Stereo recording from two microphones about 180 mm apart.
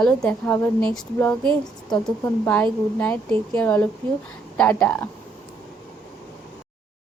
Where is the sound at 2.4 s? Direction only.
10° left (ahead or behind).